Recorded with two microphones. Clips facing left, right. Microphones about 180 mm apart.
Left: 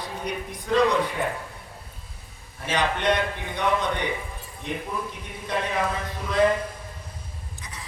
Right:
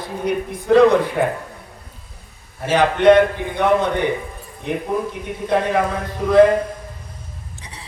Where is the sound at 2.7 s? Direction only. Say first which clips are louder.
Right 12 dB; 55° right (ahead or behind).